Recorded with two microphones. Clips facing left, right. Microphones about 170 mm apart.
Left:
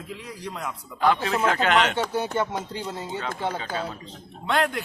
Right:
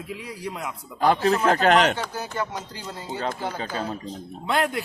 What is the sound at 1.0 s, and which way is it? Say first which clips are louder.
Speech: right 2 dB; 40° right (ahead or behind).